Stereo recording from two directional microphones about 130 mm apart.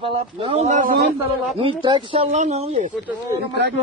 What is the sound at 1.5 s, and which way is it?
Speech, 40° right (ahead or behind).